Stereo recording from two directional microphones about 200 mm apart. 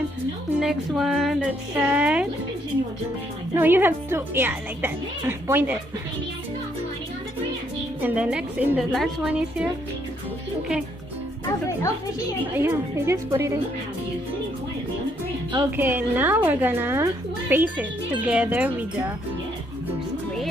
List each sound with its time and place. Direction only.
0.6 s a woman's voice: centre (ahead or behind)
3.5 s a woman's voice: 10° right (ahead or behind)
8.0 s a woman's voice: 5° right (ahead or behind)
11.4 s speech: 15° left (ahead or behind)
12.5 s a woman's voice: 10° right (ahead or behind)
15.7 s a woman's voice: 10° right (ahead or behind)